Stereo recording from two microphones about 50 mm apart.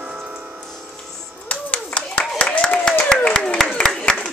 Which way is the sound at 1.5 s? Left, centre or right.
Left.